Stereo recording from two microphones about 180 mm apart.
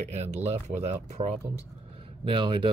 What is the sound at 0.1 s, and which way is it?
Speech, 35° right (ahead or behind).